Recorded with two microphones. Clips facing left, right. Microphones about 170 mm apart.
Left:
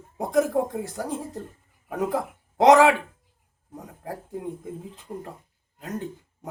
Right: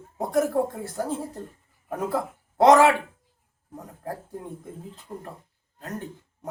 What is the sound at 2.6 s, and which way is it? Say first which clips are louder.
Speech: even; 15° left (ahead or behind).